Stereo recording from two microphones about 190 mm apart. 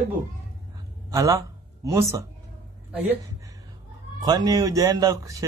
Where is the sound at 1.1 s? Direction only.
15° right (ahead or behind).